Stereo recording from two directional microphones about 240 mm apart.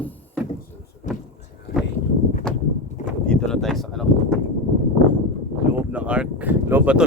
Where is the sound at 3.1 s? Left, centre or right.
Centre.